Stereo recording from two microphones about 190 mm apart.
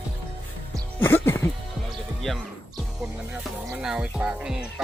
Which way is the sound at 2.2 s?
Centre (ahead or behind).